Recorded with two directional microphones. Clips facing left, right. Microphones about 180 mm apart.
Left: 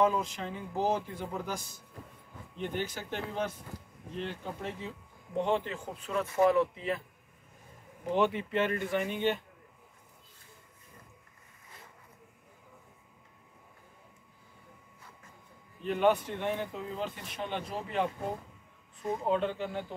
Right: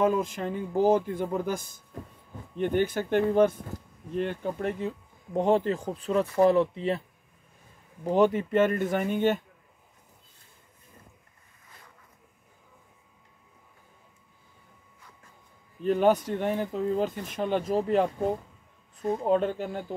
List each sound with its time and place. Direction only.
0.0 s speech: 50° right (ahead or behind); by 7.0 s 30° right (ahead or behind)
8.0 s speech: 40° right (ahead or behind)
15.8 s speech: 40° right (ahead or behind)
19.2 s speech: 45° right (ahead or behind)